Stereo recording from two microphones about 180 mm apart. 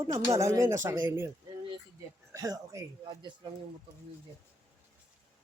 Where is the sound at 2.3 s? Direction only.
20° right (ahead or behind).